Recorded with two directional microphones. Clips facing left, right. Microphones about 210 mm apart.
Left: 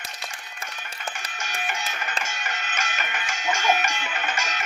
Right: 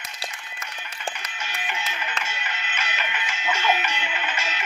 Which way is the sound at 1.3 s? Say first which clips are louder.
Left 1 dB; 45° left (ahead or behind).